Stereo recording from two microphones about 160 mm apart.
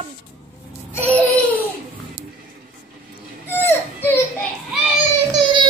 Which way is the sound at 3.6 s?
15° left (ahead or behind).